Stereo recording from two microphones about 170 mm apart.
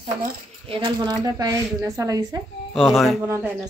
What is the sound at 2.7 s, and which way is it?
Speech, centre (ahead or behind).